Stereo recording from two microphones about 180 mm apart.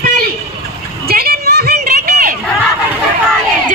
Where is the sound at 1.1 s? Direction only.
60° right (ahead or behind).